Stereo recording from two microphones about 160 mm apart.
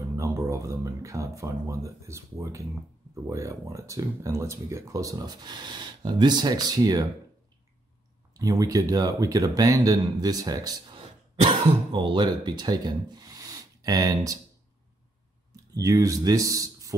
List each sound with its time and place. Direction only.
0.1 s speech: 20° right (ahead or behind)
8.3 s speech: 20° right (ahead or behind)
15.5 s speech: 20° right (ahead or behind)